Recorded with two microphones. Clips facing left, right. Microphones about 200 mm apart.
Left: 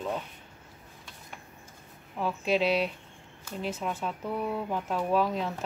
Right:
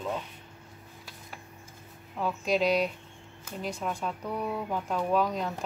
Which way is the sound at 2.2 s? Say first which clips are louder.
Even; 5° left (ahead or behind).